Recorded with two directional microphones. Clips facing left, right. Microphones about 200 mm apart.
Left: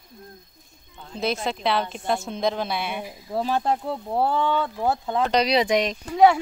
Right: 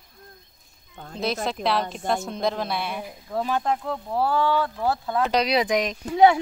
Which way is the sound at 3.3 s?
30° left (ahead or behind).